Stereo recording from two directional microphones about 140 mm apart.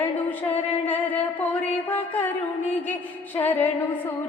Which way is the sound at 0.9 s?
10° left (ahead or behind).